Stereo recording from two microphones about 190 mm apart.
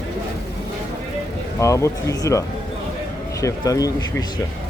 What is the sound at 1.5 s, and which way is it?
Speech, 15° left (ahead or behind).